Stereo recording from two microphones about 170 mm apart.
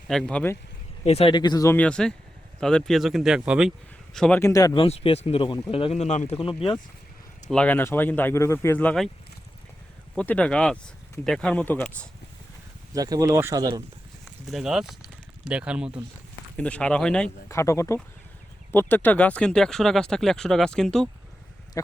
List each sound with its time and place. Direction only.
0.1 s speech: 5° left (ahead or behind)
1.0 s speech: 35° left (ahead or behind); by 4.4 s 5° left (ahead or behind)
4.4 s speech: 20° left (ahead or behind)
7.5 s speech: 10° left (ahead or behind)
10.2 s speech: 5° left (ahead or behind)
12.9 s speech: 20° right (ahead or behind)
14.4 s speech: centre (ahead or behind)
16.6 s speech: 5° left (ahead or behind)
17.5 s speech: 15° left (ahead or behind)